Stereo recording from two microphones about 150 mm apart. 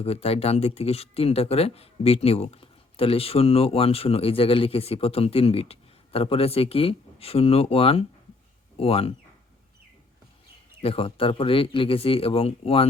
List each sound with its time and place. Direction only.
0.0 s speech: 40° left (ahead or behind)
10.8 s speech: 40° left (ahead or behind)